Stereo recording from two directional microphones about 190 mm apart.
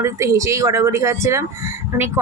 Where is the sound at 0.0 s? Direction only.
15° right (ahead or behind).